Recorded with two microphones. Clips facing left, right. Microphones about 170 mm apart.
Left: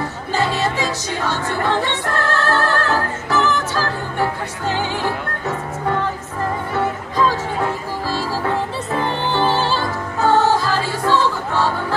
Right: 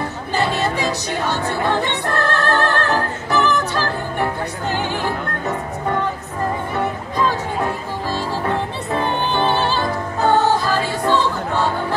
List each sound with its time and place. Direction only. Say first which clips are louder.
1.2 s music: even; 20° right (ahead or behind)
9.0 s music: even; 20° right (ahead or behind)